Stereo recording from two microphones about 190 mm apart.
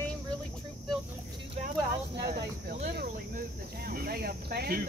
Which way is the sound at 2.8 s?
55° right (ahead or behind).